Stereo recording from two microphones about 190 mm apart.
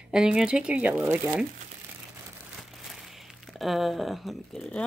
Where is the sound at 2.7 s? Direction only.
Centre (ahead or behind).